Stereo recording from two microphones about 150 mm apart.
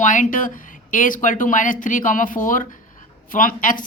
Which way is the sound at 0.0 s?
60° left (ahead or behind).